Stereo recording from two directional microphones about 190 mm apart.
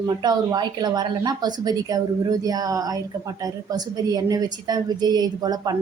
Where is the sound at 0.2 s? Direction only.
20° right (ahead or behind).